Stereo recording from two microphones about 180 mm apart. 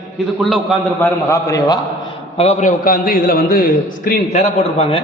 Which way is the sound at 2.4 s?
40° left (ahead or behind).